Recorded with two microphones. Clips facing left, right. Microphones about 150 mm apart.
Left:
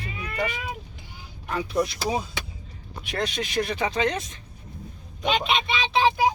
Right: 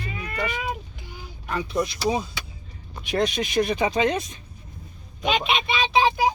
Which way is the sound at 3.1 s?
15° right (ahead or behind).